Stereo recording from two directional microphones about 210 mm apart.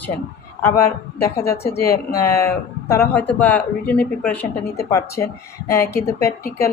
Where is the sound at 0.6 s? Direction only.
10° left (ahead or behind).